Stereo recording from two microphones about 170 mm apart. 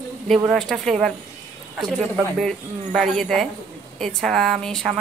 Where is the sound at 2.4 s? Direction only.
Centre (ahead or behind).